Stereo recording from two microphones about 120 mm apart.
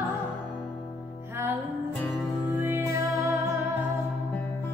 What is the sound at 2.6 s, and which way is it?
Music, 20° right (ahead or behind).